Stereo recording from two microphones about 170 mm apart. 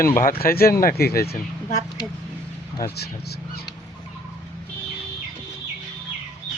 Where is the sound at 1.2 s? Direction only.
45° left (ahead or behind).